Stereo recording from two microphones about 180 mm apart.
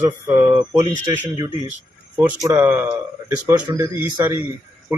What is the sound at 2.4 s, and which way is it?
A man's voice, 15° right (ahead or behind).